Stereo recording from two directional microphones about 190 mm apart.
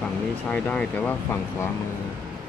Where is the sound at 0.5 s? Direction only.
5° left (ahead or behind).